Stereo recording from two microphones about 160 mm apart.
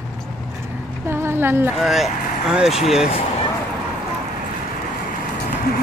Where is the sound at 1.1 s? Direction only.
15° right (ahead or behind).